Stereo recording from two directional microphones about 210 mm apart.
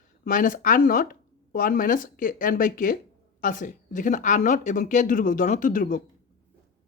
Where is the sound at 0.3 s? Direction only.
40° left (ahead or behind).